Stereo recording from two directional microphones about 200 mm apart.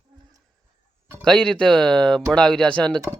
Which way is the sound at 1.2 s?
5° left (ahead or behind).